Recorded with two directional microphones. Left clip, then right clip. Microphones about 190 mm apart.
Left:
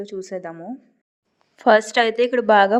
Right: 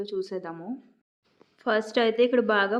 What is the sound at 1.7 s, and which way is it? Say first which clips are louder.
A woman's voice: left 9 dB; 40° left (ahead or behind).